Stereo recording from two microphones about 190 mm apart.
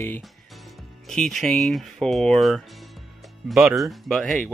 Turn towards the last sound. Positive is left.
turn(degrees=0)  # may be behind; listen again after turning